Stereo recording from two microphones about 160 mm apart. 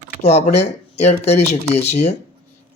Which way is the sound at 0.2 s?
40° left (ahead or behind).